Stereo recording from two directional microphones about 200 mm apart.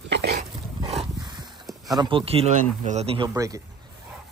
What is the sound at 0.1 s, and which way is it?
Dog, 55° right (ahead or behind).